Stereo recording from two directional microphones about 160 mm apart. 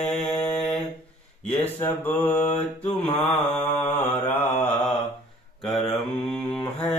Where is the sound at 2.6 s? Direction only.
45° left (ahead or behind).